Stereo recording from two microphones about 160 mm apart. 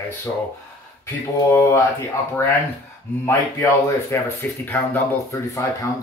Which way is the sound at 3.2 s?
20° left (ahead or behind).